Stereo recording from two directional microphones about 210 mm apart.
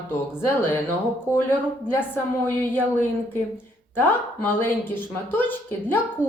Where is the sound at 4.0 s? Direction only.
10° left (ahead or behind).